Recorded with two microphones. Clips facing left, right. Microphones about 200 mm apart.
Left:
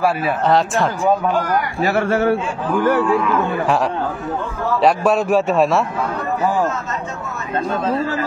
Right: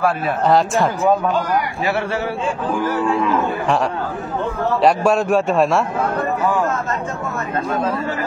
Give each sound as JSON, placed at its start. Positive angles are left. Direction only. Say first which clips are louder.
{"t": 0.0, "sound": "a man's voice", "louder": "even", "side_deg": 0}
{"t": 1.8, "sound": "a man's voice", "louder": "left 4 dB", "side_deg": 45}
{"t": 4.8, "sound": "a man's voice", "louder": "even", "side_deg": 0}
{"t": 7.8, "sound": "a man's voice", "louder": "left 2 dB", "side_deg": 30}